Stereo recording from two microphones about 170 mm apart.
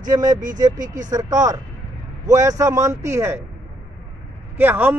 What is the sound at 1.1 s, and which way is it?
A man's voice, 20° right (ahead or behind).